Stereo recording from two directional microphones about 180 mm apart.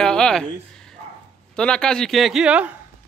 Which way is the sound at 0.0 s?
5° left (ahead or behind).